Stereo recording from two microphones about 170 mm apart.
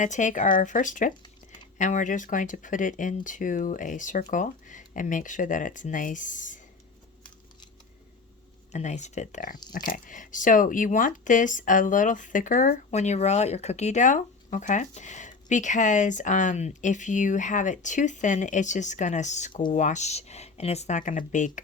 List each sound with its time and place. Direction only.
0.0 s speech: 45° left (ahead or behind)
8.7 s speech: 45° left (ahead or behind)